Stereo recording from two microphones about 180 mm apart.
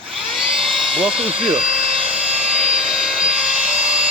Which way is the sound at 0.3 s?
Centre (ahead or behind).